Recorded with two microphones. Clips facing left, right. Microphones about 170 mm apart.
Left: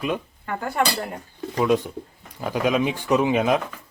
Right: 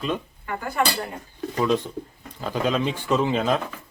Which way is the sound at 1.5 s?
10° left (ahead or behind).